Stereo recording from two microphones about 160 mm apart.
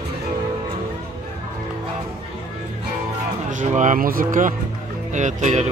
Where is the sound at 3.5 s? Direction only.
50° right (ahead or behind).